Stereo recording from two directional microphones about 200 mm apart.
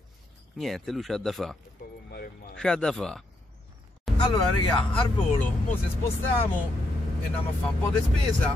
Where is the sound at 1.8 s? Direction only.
45° left (ahead or behind).